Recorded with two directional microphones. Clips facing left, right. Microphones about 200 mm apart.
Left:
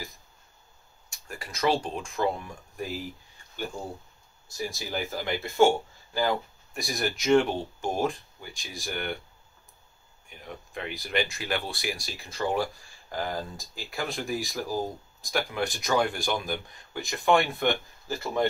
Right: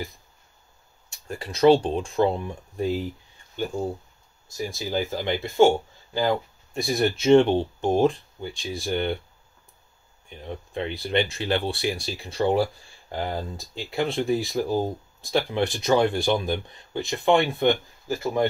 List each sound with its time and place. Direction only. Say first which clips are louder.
1.2 s speech: right 10 dB; 30° right (ahead or behind)
4.6 s speech: right 5 dB; 20° right (ahead or behind)
10.4 s speech: right 7 dB; 30° right (ahead or behind)